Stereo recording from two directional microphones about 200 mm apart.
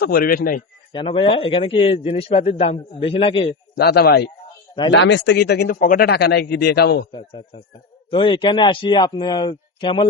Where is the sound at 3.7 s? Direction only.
55° left (ahead or behind).